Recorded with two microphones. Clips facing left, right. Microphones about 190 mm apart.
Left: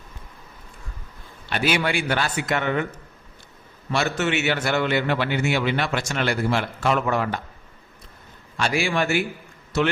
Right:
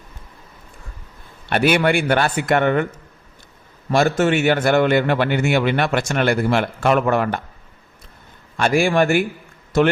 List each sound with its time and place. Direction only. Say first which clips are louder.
1.5 s a man's voice: right 7 dB; 55° right (ahead or behind)
3.9 s a man's voice: right 7 dB; 45° right (ahead or behind)
8.5 s a man's voice: right 7 dB; 50° right (ahead or behind)